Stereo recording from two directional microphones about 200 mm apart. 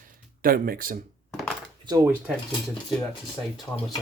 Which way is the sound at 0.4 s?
45° right (ahead or behind).